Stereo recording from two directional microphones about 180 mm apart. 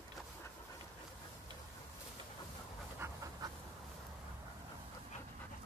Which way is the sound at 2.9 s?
20° right (ahead or behind).